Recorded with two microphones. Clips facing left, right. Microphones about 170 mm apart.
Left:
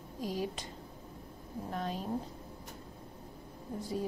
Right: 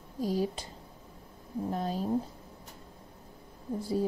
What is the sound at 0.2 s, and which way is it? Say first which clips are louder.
Speech: right 6 dB; 35° right (ahead or behind).